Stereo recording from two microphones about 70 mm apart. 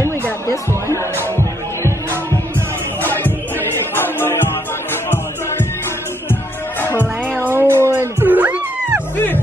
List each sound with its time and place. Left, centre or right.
0.5 s speech: left
1.2 s music: left
3.0 s music: left
3.5 s chatter: left
6.8 s music: left
7.5 s cat: right